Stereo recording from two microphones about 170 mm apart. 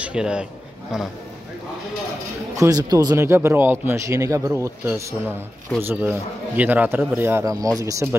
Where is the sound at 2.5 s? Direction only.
20° right (ahead or behind).